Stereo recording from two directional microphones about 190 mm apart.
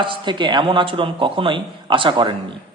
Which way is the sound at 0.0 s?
25° right (ahead or behind).